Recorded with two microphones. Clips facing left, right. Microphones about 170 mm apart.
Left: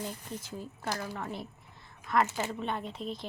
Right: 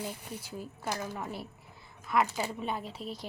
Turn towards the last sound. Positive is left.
turn(degrees=-5)  # may be behind; listen again after turning